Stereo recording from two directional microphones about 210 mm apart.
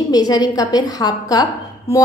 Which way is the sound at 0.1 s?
20° left (ahead or behind).